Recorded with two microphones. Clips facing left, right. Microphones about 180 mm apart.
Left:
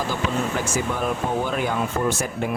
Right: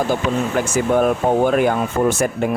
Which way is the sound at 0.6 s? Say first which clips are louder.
Right 8 dB; 55° right (ahead or behind).